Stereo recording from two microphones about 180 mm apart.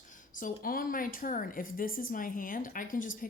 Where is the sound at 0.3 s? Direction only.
50° left (ahead or behind).